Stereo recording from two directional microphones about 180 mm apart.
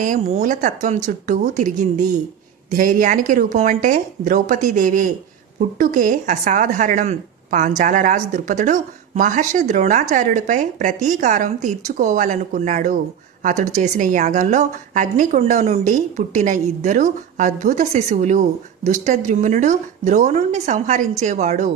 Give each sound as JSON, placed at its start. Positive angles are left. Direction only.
{"t": 0.0, "sound": "a woman's voice", "side_deg": -45}